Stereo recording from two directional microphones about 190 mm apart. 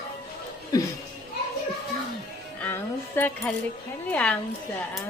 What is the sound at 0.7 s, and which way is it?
Speech, 20° left (ahead or behind).